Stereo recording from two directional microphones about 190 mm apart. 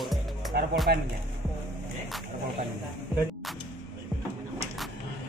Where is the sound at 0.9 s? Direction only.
55° right (ahead or behind).